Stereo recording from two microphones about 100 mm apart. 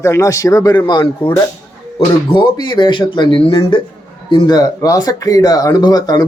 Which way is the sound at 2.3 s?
50° left (ahead or behind).